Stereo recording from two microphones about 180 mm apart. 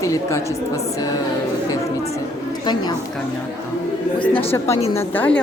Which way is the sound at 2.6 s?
25° left (ahead or behind).